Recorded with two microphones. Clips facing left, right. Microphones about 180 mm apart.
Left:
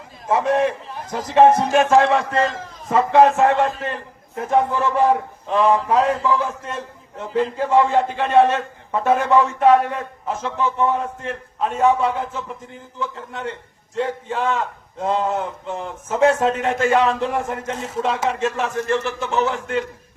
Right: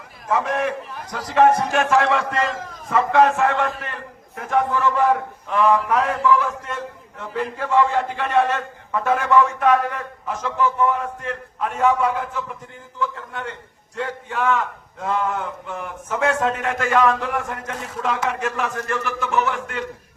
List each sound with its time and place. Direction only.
0.3 s a man's voice: 25° left (ahead or behind)